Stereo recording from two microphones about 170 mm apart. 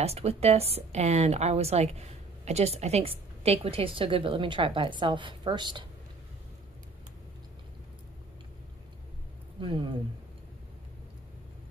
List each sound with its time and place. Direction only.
0.0 s speech: 35° right (ahead or behind)
9.6 s speech: 30° right (ahead or behind)